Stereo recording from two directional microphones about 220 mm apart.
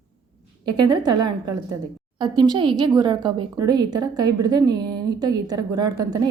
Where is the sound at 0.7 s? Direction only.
20° right (ahead or behind).